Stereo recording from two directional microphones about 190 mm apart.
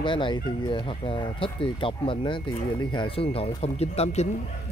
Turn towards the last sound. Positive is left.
turn(degrees=35)  # may be behind; listen again after turning